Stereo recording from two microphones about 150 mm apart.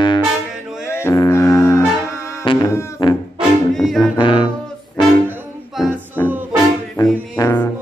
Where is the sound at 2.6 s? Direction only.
20° left (ahead or behind).